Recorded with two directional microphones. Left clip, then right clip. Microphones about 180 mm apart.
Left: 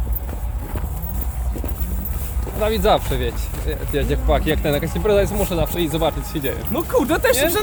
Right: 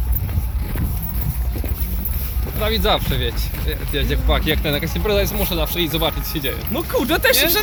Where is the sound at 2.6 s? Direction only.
45° left (ahead or behind).